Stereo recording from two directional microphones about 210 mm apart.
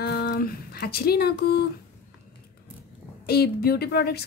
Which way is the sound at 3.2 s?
50° left (ahead or behind).